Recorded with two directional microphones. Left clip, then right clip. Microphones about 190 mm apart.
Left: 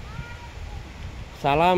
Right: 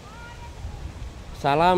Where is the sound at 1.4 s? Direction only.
Centre (ahead or behind).